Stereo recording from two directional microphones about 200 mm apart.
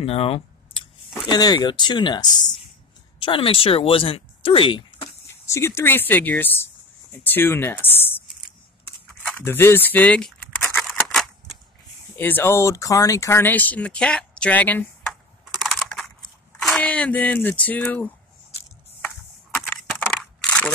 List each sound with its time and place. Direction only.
0.0 s a sound: 30° left (ahead or behind)
1.3 s speech: 20° left (ahead or behind)
5.6 s speech: 10° left (ahead or behind)
9.2 s a sound: 10° left (ahead or behind)
12.2 s speech: 10° left (ahead or behind)
15.6 s computer keyboard: centre (ahead or behind)
16.6 s speech: 5° left (ahead or behind)
19.7 s crushing: 5° left (ahead or behind)